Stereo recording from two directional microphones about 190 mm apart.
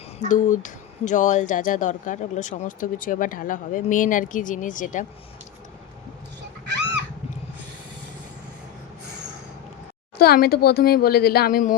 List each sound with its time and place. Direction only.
0.2 s speech: 40° left (ahead or behind)
10.2 s speech: 55° left (ahead or behind)